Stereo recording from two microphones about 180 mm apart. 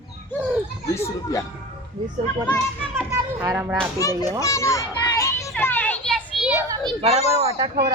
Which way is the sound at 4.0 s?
20° left (ahead or behind).